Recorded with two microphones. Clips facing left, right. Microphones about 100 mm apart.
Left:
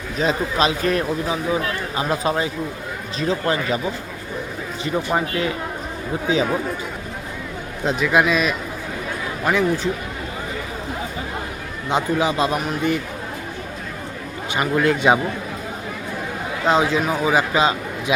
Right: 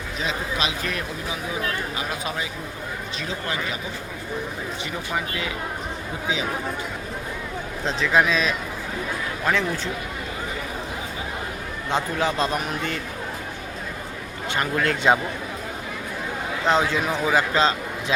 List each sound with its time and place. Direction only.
0.2 s speech: 40° left (ahead or behind)
7.9 s a man's voice: 10° left (ahead or behind)
11.9 s a man's voice: 10° left (ahead or behind)
14.5 s a man's voice: 10° left (ahead or behind)
16.6 s a man's voice: 10° left (ahead or behind)